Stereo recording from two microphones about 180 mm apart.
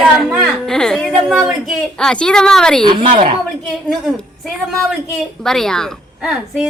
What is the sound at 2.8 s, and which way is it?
Speech, 25° right (ahead or behind).